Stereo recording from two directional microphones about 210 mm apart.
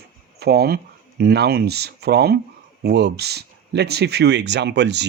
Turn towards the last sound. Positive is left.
turn(degrees=-55)  # may be behind; listen again after turning